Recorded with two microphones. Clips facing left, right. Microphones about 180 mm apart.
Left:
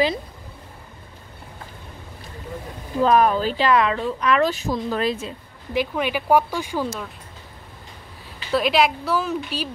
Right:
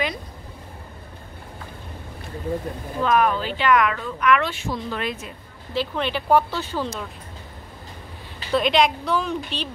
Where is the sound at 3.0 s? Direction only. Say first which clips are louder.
Left 3 dB; 35° left (ahead or behind).